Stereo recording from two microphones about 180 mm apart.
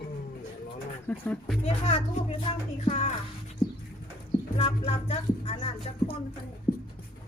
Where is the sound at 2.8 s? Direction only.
40° left (ahead or behind).